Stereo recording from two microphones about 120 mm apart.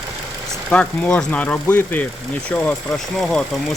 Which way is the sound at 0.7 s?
10° left (ahead or behind).